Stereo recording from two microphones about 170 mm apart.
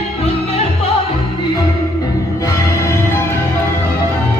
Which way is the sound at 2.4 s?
15° left (ahead or behind).